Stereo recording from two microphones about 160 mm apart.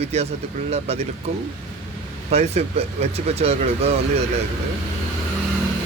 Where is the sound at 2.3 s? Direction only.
40° right (ahead or behind).